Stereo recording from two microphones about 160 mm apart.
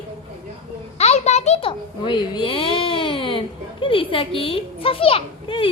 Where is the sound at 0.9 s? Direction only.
40° left (ahead or behind).